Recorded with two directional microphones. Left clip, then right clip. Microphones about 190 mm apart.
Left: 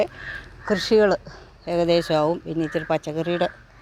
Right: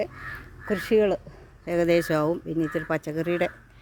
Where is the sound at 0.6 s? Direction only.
5° right (ahead or behind).